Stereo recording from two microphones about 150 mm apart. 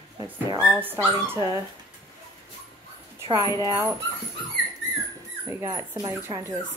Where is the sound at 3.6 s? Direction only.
20° right (ahead or behind).